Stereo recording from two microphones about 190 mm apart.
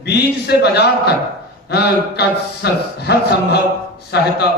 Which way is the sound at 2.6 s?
60° left (ahead or behind).